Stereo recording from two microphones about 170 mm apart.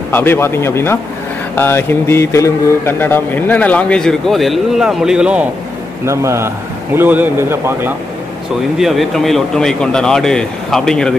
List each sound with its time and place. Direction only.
0.1 s mantra: 10° left (ahead or behind); by 5.5 s 5° right (ahead or behind)
6.0 s speech: 15° right (ahead or behind)
8.7 s speech: centre (ahead or behind)